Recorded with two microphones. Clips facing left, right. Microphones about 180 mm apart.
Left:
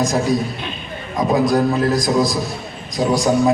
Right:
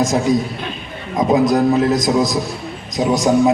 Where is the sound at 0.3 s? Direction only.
20° right (ahead or behind).